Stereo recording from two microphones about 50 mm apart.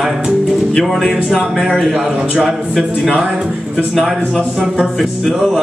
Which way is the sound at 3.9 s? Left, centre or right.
Centre.